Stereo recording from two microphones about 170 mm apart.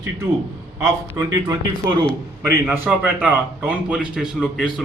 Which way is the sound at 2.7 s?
10° right (ahead or behind).